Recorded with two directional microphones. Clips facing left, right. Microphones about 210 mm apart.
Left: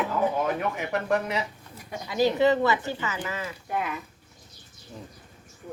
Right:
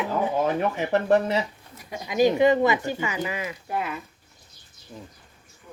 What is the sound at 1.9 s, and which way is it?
Speech, 15° right (ahead or behind).